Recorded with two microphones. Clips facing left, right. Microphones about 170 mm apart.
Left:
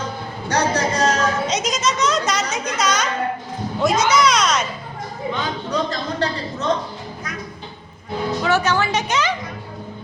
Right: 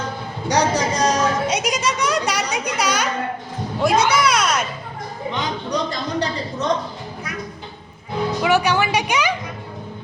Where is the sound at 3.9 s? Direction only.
60° right (ahead or behind).